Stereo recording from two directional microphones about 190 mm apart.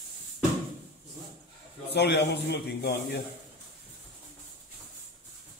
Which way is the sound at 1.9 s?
60° left (ahead or behind).